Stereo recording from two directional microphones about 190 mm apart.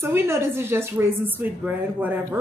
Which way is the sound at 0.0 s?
15° right (ahead or behind).